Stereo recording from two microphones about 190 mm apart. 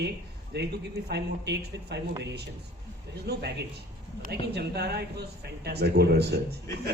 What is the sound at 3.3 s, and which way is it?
Speech, 60° right (ahead or behind).